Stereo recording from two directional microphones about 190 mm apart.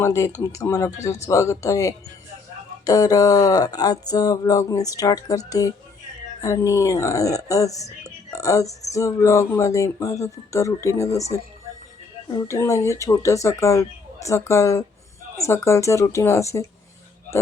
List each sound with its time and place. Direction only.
0.0 s speech: 15° left (ahead or behind)
2.8 s a sound: 20° left (ahead or behind)
6.4 s speech: 15° left (ahead or behind)